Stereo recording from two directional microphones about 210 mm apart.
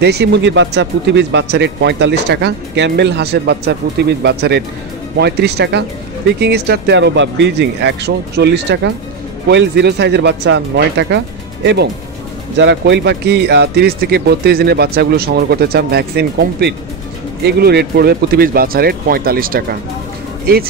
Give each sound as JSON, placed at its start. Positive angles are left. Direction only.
{"t": 0.0, "sound": "speech", "side_deg": -55}